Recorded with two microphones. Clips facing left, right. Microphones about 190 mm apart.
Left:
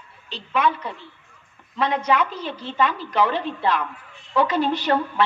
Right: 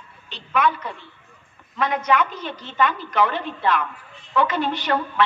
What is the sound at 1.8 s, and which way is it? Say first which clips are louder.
A woman's voice: even; 30° left (ahead or behind).